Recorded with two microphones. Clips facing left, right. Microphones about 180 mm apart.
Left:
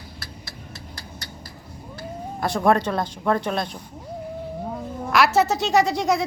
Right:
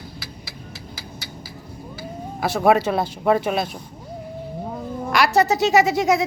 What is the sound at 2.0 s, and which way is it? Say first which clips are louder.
Speech: right 1 dB; 5° right (ahead or behind).